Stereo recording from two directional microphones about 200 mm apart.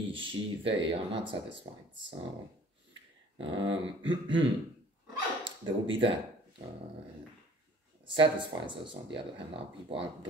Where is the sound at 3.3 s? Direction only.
25° right (ahead or behind).